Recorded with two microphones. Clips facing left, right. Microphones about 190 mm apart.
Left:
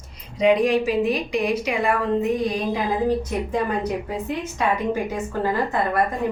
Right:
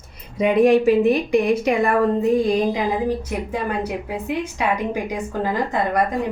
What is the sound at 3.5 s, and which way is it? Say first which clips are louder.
Speech: left 1 dB; 10° right (ahead or behind).